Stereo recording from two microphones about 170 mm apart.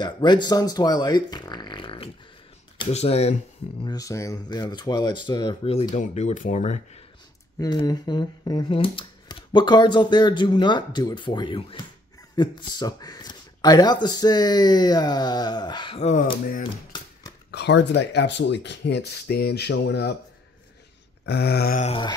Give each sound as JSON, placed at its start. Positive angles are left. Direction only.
{"t": 0.0, "sound": "speech", "side_deg": 25}
{"t": 3.8, "sound": "speech", "side_deg": 20}
{"t": 5.9, "sound": "speech", "side_deg": 45}
{"t": 7.6, "sound": "speech", "side_deg": 20}
{"t": 16.0, "sound": "speech", "side_deg": 45}
{"t": 17.5, "sound": "speech", "side_deg": 85}
{"t": 21.3, "sound": "a sound", "side_deg": 70}